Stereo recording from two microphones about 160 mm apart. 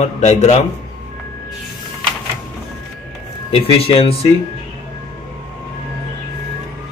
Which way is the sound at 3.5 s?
35° left (ahead or behind).